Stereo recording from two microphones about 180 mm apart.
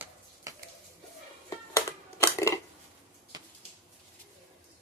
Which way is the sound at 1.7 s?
15° left (ahead or behind).